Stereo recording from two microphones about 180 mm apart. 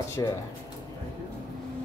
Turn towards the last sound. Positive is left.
turn(degrees=15)  # may be behind; listen again after turning